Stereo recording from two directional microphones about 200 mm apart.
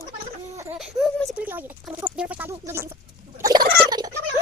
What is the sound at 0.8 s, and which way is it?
Speech, centre (ahead or behind).